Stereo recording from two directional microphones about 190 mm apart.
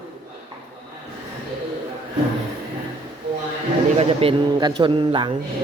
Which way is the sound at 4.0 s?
30° right (ahead or behind).